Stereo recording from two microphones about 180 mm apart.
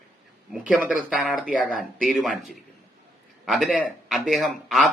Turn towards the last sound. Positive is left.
turn(degrees=0)  # may be behind; listen again after turning